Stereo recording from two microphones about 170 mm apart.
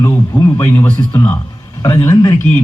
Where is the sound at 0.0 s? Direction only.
15° left (ahead or behind).